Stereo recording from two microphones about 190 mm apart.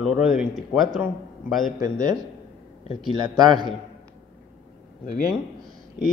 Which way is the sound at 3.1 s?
20° right (ahead or behind).